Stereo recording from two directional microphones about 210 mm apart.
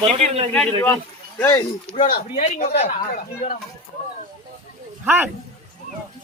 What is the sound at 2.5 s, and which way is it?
A woman's voice, 30° left (ahead or behind).